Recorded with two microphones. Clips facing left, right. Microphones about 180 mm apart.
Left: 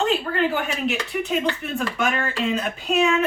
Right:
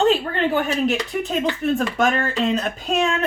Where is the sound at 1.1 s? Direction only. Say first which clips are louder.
Right 1 dB; 40° right (ahead or behind).